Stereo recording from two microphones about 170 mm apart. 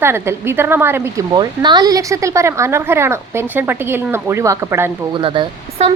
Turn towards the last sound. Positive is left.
turn(degrees=-30)  # may be behind; listen again after turning